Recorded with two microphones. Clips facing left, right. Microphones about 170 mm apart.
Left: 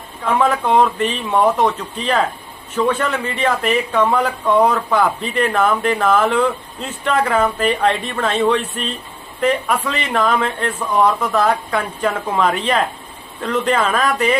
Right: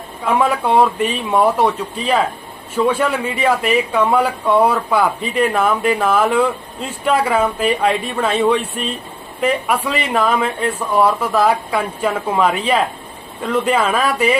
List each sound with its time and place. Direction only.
0.3 s speech: 10° right (ahead or behind)